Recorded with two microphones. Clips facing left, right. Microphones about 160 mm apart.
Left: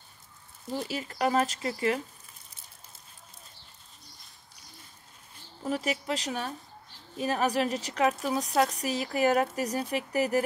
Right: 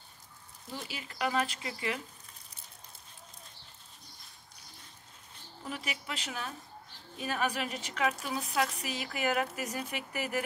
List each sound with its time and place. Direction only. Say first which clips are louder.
0.7 s speech: left 9 dB; 40° left (ahead or behind)
5.6 s speech: left 10 dB; 40° left (ahead or behind)